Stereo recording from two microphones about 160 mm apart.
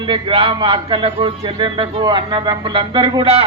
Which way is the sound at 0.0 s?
30° right (ahead or behind).